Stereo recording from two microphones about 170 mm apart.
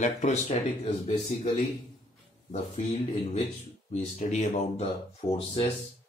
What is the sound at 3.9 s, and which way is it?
Speech, 45° left (ahead or behind).